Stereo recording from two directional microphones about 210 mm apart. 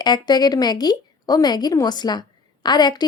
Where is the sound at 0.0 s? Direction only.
20° left (ahead or behind).